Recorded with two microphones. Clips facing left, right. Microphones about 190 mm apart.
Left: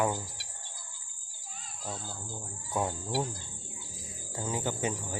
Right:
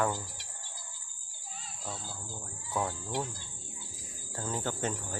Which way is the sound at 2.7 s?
20° left (ahead or behind).